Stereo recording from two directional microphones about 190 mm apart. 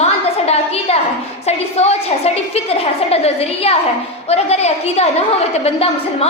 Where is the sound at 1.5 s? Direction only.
35° left (ahead or behind).